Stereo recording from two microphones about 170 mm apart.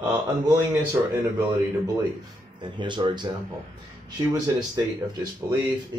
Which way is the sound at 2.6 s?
30° right (ahead or behind).